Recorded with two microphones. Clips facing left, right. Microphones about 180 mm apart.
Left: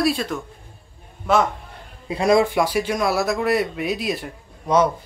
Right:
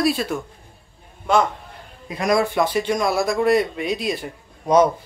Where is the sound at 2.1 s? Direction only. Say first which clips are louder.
Left 3 dB; 25° left (ahead or behind).